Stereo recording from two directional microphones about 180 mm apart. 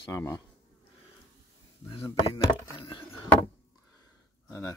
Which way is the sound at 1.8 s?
30° left (ahead or behind).